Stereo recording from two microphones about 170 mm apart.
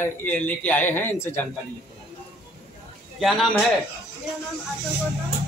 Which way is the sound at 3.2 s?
Centre (ahead or behind).